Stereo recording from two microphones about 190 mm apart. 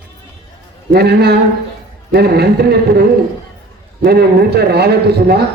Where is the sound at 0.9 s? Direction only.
55° right (ahead or behind).